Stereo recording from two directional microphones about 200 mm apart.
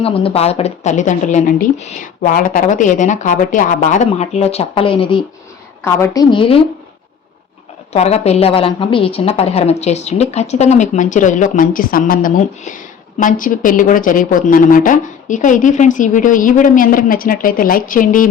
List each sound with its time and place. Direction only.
0.0 s a woman's voice: 25° left (ahead or behind)
5.8 s a woman's voice: 15° left (ahead or behind)
6.3 s speech: 25° left (ahead or behind)
7.9 s a woman's voice: 30° left (ahead or behind)